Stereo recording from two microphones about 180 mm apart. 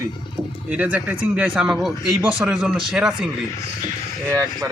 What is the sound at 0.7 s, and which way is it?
Speech, 5° right (ahead or behind).